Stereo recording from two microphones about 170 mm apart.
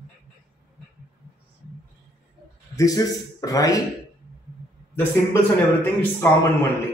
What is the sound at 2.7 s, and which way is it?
A man's voice, 20° left (ahead or behind).